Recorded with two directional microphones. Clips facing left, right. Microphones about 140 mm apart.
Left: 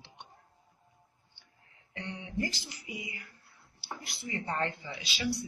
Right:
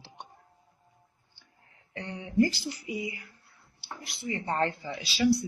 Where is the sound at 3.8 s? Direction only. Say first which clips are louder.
Right 2 dB; 20° right (ahead or behind).